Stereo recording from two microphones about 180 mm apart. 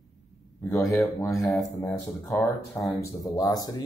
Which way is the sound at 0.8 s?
15° left (ahead or behind).